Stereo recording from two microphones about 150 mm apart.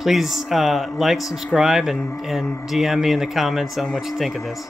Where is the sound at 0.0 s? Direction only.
Centre (ahead or behind).